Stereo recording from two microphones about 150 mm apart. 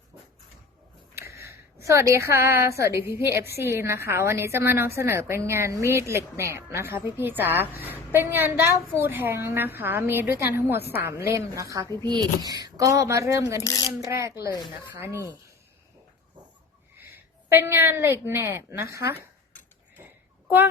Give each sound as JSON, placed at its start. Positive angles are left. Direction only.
{"t": 1.1, "sound": "a sound", "side_deg": -20}
{"t": 1.8, "sound": "a woman's voice", "side_deg": -20}
{"t": 13.6, "sound": "speech", "side_deg": 25}
{"t": 14.0, "sound": "a woman's voice", "side_deg": -20}
{"t": 17.5, "sound": "a woman's voice", "side_deg": -15}